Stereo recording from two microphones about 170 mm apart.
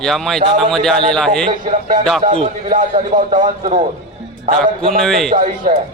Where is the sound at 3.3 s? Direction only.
45° right (ahead or behind).